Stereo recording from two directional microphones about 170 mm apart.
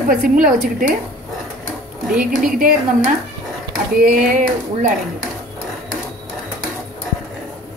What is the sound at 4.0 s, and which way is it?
Speech, 55° right (ahead or behind).